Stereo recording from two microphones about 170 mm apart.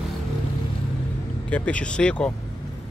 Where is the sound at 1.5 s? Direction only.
5° left (ahead or behind).